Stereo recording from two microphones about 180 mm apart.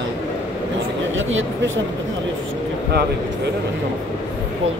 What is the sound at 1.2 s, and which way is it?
Speech, 90° right.